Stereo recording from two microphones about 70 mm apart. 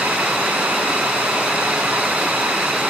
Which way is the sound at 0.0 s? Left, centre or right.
Centre.